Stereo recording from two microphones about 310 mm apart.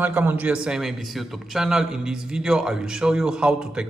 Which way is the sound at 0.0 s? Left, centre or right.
Centre.